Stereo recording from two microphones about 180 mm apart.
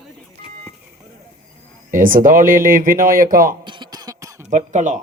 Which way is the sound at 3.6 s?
25° right (ahead or behind).